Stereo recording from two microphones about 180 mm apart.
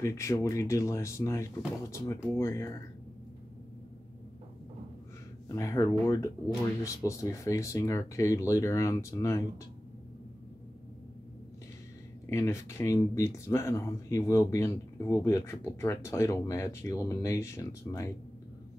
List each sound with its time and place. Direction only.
0.0 s speech: 15° left (ahead or behind)
5.5 s speech: 20° left (ahead or behind)
12.3 s speech: 15° left (ahead or behind)